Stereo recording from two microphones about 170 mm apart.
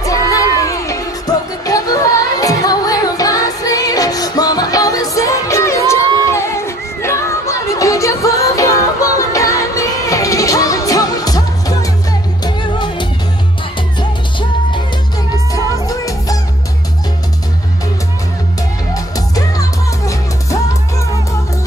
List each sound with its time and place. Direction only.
0.0 s music: 20° left (ahead or behind)
15.8 s music: 20° left (ahead or behind)
18.9 s music: 20° left (ahead or behind)